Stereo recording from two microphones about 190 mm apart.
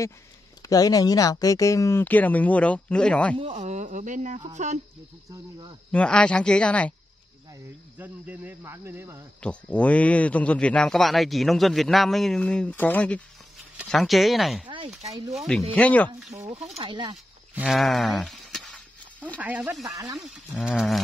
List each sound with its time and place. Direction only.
0.6 s speech: 20° left (ahead or behind)
3.3 s speech: 35° right (ahead or behind)
5.3 s speech: 20° right (ahead or behind)
5.9 s a man's voice: 5° left (ahead or behind)
8.0 s speech: 10° right (ahead or behind)
9.4 s a man's voice: 5° left (ahead or behind)
16.7 s speech: 25° right (ahead or behind)
17.6 s a sound: centre (ahead or behind)
19.4 s a man's voice: 5° right (ahead or behind)